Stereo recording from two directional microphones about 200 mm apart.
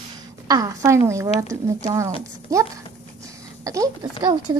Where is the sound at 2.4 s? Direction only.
15° right (ahead or behind).